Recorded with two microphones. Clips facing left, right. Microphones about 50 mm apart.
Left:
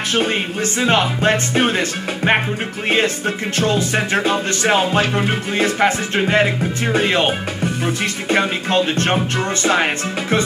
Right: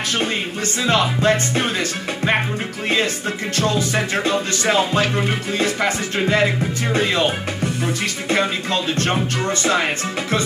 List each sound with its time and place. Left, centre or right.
0.3 s music: left
7.6 s music: centre
8.4 s music: left